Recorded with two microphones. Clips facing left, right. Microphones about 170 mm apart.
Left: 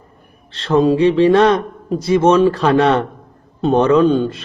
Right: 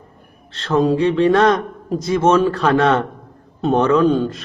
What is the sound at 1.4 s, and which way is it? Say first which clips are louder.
Speech: left 2 dB; 10° left (ahead or behind).